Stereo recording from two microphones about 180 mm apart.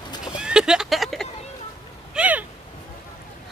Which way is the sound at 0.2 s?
5° right (ahead or behind).